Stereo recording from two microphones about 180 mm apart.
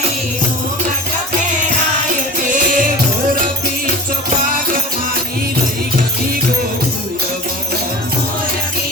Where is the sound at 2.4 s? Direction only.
45° right (ahead or behind).